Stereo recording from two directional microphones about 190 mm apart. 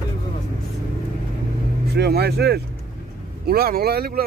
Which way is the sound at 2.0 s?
55° right (ahead or behind).